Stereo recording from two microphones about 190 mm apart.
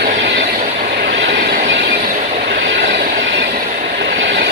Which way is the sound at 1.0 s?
60° right (ahead or behind).